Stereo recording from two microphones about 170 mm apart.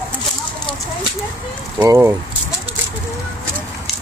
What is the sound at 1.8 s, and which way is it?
Speech, 15° right (ahead or behind).